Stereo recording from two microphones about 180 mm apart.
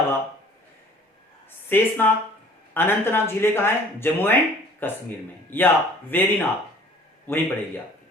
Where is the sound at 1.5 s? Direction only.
10° left (ahead or behind).